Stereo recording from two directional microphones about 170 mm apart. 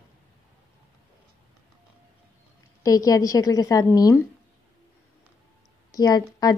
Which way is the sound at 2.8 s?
20° left (ahead or behind).